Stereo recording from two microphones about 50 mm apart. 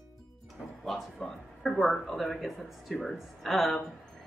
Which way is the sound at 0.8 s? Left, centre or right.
Centre.